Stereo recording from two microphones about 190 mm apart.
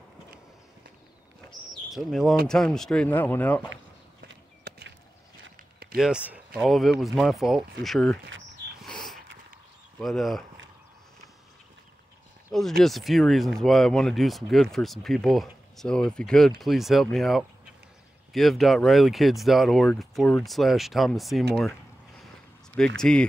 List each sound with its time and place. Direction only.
1.7 s bird: centre (ahead or behind)
2.4 s speech: 5° left (ahead or behind)
4.2 s clip-clop: 55° right (ahead or behind)
5.9 s speech: 5° right (ahead or behind)
8.8 s a sound: centre (ahead or behind)
9.9 s speech: centre (ahead or behind)
12.8 s speech: centre (ahead or behind)
22.9 s speech: 5° left (ahead or behind)